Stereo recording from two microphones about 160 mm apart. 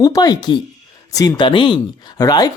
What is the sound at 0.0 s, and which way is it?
Speech, 25° left (ahead or behind).